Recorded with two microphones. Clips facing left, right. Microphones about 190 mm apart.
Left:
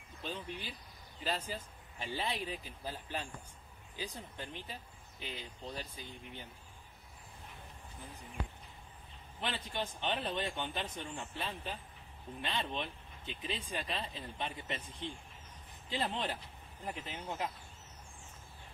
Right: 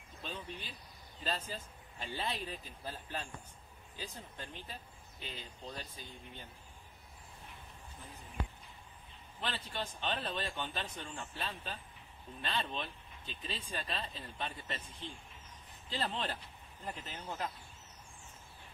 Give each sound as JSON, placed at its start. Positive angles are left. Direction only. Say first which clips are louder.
{"t": 0.2, "sound": "a sound", "louder": "left 3 dB", "side_deg": 10}
{"t": 1.2, "sound": "speech", "louder": "left 2 dB", "side_deg": 15}
{"t": 9.4, "sound": "speech", "louder": "left 2 dB", "side_deg": 15}